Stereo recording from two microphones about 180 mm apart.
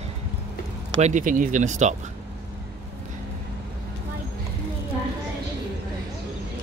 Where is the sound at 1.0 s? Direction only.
40° right (ahead or behind).